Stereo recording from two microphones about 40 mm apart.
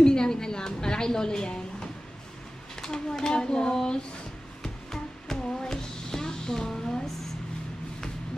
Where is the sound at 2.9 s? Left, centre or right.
Centre.